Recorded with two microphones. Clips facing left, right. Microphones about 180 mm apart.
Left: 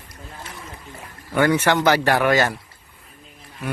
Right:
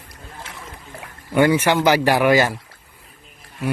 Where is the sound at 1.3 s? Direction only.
10° right (ahead or behind).